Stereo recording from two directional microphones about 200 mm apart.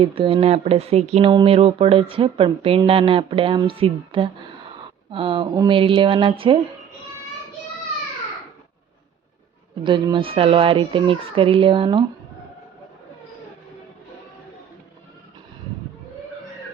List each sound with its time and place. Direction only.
0.0 s speech: 25° right (ahead or behind)
9.8 s speech: 25° right (ahead or behind)